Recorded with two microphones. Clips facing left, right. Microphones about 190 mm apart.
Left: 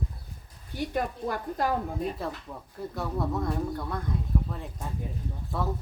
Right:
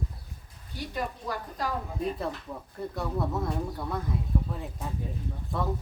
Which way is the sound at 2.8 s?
Centre (ahead or behind).